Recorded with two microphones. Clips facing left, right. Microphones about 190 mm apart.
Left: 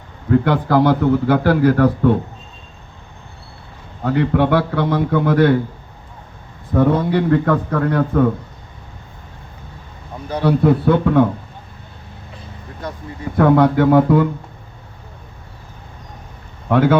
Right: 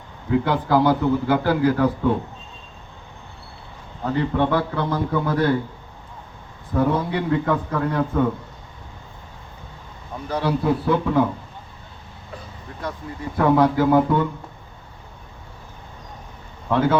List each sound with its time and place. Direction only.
0.3 s a man's voice: 85° left
4.0 s a man's voice: 75° left (ahead or behind)
6.7 s a man's voice: 80° left
10.4 s a man's voice: 75° left (ahead or behind)
13.3 s a man's voice: 75° left (ahead or behind)
16.6 s a man's voice: 80° left